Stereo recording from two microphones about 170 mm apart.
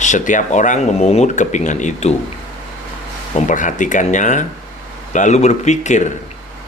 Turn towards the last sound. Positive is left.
turn(degrees=45)  # may be behind; listen again after turning